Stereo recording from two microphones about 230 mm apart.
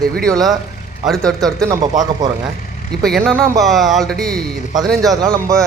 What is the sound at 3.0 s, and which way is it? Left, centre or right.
Speech, centre.